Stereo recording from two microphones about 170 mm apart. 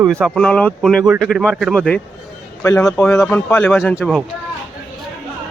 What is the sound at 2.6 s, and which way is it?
Speech, 15° left (ahead or behind).